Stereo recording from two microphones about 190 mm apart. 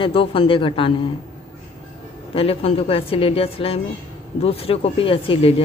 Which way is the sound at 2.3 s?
30° left (ahead or behind).